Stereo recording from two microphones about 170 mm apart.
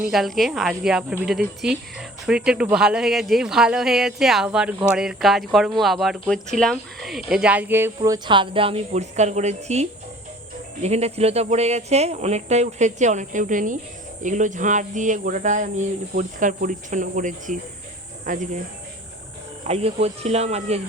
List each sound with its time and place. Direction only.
0.0 s speech: centre (ahead or behind)
8.0 s speech: 25° right (ahead or behind); by 9.8 s 40° right (ahead or behind)
10.8 s speech: 40° right (ahead or behind)
19.6 s speech: 40° right (ahead or behind)